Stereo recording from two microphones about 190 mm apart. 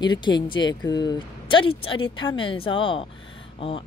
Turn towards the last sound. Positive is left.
turn(degrees=30)  # may be behind; listen again after turning